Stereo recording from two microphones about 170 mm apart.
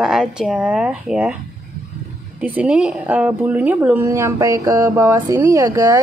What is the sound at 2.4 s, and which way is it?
Speech, 10° right (ahead or behind).